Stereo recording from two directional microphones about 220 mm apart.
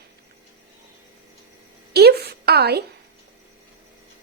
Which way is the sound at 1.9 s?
45° right (ahead or behind).